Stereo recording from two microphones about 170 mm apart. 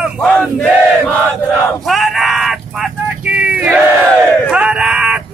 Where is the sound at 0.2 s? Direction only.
5° left (ahead or behind).